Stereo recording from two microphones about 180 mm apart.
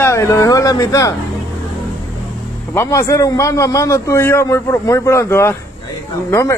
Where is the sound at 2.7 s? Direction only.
15° left (ahead or behind).